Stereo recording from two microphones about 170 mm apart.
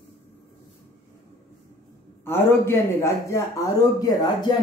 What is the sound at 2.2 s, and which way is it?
A man's voice, 15° left (ahead or behind).